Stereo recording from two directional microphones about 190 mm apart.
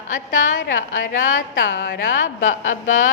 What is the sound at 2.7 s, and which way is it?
Speech, 45° left (ahead or behind).